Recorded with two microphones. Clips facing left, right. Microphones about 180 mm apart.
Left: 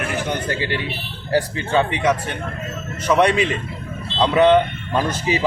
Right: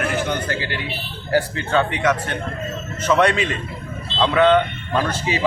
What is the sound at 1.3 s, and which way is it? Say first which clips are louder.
A man's voice: even; 15° left (ahead or behind).